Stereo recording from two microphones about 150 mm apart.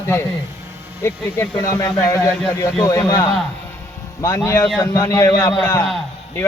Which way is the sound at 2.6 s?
10° left (ahead or behind).